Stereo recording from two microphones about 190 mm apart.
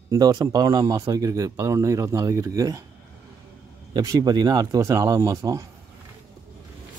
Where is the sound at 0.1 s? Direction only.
20° right (ahead or behind).